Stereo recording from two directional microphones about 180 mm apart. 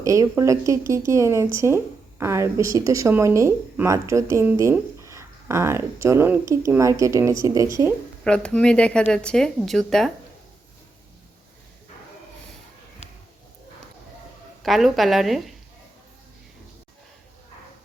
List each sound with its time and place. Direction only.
0.0 s speech: 20° right (ahead or behind)
8.2 s speech: 5° left (ahead or behind)
14.6 s speech: centre (ahead or behind)